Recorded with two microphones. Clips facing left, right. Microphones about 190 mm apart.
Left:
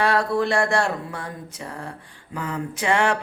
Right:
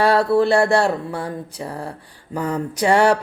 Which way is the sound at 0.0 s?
30° right (ahead or behind).